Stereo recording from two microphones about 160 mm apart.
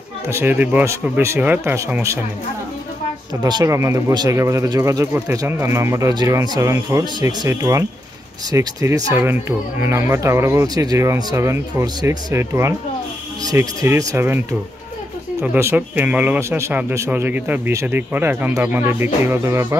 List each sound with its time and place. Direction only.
0.3 s speech: 15° right (ahead or behind)
3.4 s speech: 25° right (ahead or behind)
15.4 s speech: 10° right (ahead or behind)